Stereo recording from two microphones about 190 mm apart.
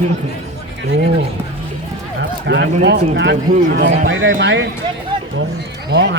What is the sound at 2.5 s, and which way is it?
A man's voice, 65° right (ahead or behind).